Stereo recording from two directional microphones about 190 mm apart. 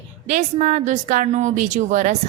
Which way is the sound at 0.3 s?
40° right (ahead or behind).